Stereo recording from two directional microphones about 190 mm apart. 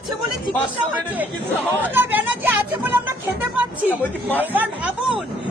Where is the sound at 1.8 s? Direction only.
10° right (ahead or behind).